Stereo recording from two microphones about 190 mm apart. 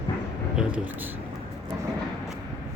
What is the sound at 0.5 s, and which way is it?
Speech, 10° right (ahead or behind).